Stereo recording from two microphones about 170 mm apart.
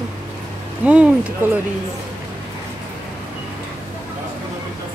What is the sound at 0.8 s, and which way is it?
Speech, 5° right (ahead or behind).